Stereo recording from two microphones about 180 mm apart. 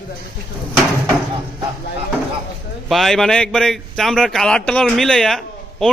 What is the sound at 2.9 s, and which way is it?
A man's voice, centre (ahead or behind).